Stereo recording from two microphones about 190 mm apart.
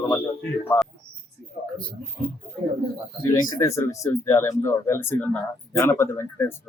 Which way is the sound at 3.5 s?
15° left (ahead or behind).